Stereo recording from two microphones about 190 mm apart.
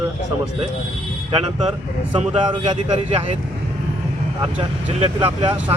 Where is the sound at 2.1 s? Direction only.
25° right (ahead or behind).